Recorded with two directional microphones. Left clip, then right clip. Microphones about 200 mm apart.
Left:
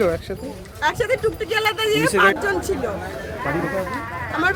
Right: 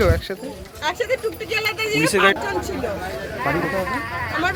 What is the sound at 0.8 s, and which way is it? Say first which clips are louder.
Speech: left 2 dB; 5° left (ahead or behind).